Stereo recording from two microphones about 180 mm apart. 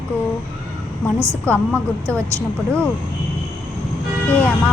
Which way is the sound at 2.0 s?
15° right (ahead or behind).